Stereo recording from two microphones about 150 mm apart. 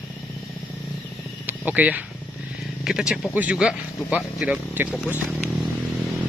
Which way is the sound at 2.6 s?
5° right (ahead or behind).